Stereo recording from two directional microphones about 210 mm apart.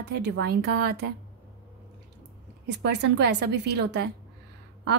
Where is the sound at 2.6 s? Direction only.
55° right (ahead or behind).